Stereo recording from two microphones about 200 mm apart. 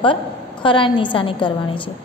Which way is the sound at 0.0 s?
25° left (ahead or behind).